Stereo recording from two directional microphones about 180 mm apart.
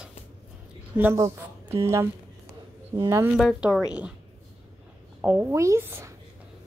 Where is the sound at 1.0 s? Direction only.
15° right (ahead or behind).